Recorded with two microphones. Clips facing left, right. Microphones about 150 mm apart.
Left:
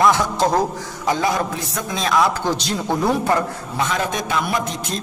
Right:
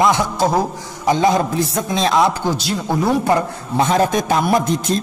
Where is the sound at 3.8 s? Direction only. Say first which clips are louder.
Right 7 dB; 35° right (ahead or behind).